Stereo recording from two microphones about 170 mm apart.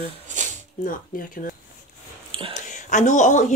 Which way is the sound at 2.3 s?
30° right (ahead or behind).